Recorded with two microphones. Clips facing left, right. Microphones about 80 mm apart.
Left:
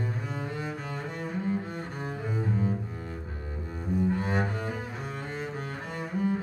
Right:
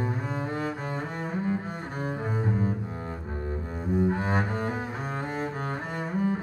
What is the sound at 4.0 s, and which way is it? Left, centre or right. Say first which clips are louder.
Double bass: right 2 dB; right.